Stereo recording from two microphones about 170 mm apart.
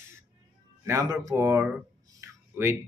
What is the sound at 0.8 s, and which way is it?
Speech, 15° right (ahead or behind).